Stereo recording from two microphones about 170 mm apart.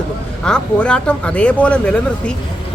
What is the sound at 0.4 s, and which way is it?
Speech, 5° left (ahead or behind).